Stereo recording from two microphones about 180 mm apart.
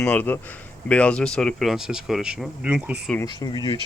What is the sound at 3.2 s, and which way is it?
Speech, 25° left (ahead or behind).